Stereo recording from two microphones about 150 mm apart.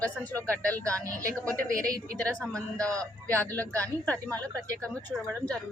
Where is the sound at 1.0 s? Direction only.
20° right (ahead or behind).